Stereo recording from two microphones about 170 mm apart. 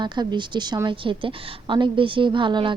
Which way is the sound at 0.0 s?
25° right (ahead or behind).